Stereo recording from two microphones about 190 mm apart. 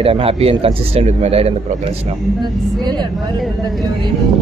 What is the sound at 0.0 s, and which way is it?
Speech, 30° right (ahead or behind).